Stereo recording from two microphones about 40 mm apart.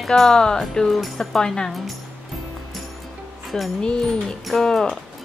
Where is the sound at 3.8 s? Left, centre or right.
Left.